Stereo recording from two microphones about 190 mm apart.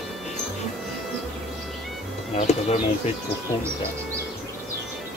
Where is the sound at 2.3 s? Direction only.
35° left (ahead or behind).